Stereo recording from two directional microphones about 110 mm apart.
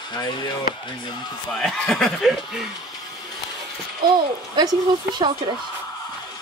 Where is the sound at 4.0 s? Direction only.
40° right (ahead or behind).